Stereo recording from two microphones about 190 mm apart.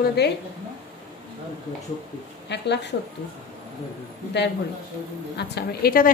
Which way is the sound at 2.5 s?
65° left (ahead or behind).